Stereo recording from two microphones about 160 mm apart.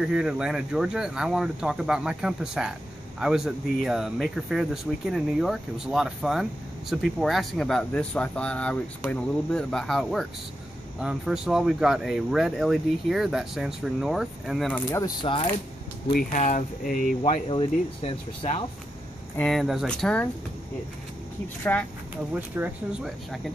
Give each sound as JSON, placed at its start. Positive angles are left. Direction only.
{"t": 0.0, "sound": "speech", "side_deg": -5}
{"t": 14.9, "sound": "speech", "side_deg": 20}
{"t": 16.1, "sound": "speech", "side_deg": 60}
{"t": 17.2, "sound": "speech", "side_deg": 35}
{"t": 19.3, "sound": "speech", "side_deg": 5}
{"t": 21.7, "sound": "speech", "side_deg": 10}
{"t": 22.1, "sound": "speech", "side_deg": -10}
{"t": 23.0, "sound": "speech", "side_deg": 0}